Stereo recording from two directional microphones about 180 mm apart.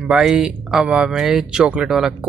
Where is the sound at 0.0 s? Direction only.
Centre (ahead or behind).